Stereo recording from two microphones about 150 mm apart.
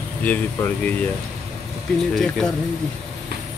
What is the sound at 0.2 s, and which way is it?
Speech, 10° left (ahead or behind).